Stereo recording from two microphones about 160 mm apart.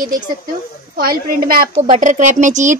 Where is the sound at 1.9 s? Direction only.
50° right (ahead or behind).